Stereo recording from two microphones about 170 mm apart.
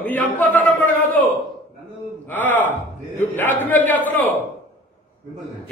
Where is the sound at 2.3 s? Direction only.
10° left (ahead or behind).